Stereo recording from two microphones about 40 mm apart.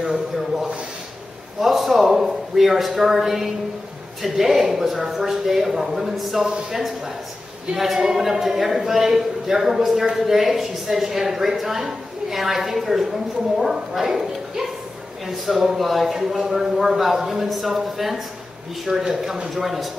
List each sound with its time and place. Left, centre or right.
1.6 s a woman's voice: centre
19.5 s a woman's voice: centre